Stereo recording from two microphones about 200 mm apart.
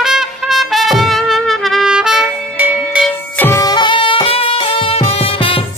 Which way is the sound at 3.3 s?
10° left (ahead or behind).